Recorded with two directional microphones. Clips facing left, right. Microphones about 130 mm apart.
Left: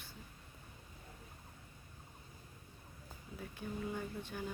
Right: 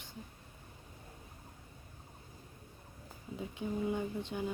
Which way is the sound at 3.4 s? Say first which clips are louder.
Right 6 dB; 20° right (ahead or behind).